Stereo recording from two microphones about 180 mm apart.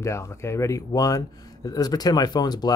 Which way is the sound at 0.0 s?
15° left (ahead or behind).